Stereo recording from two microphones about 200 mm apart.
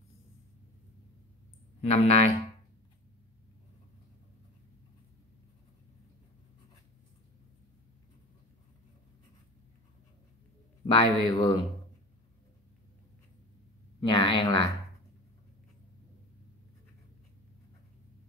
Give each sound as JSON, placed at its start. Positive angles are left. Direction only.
{"t": 1.8, "sound": "speech", "side_deg": 30}
{"t": 10.9, "sound": "speech", "side_deg": 20}
{"t": 14.0, "sound": "speech", "side_deg": 25}